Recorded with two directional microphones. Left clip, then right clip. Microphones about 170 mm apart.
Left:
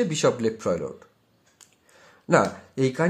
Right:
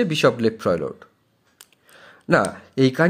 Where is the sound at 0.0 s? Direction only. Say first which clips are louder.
Right 4 dB; 20° right (ahead or behind).